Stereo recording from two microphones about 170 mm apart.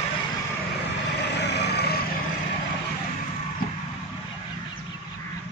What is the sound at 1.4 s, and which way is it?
Vehicle, 80° left.